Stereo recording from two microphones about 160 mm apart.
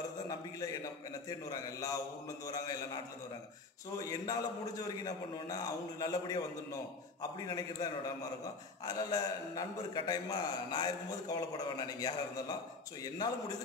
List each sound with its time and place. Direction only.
1.5 s a man's voice: 20° left (ahead or behind)
4.0 s a man's voice: 20° left (ahead or behind)